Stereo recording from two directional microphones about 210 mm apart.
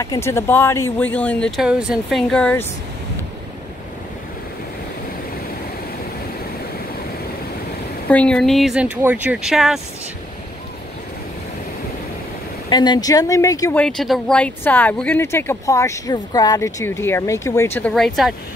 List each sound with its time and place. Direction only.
0.0 s speech: 15° left (ahead or behind)
8.1 s speech: 5° left (ahead or behind)
12.6 s speech: 20° left (ahead or behind)
13.7 s speech: centre (ahead or behind)